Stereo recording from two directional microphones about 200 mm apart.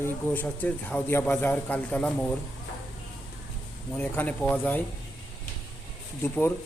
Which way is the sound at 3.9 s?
10° left (ahead or behind).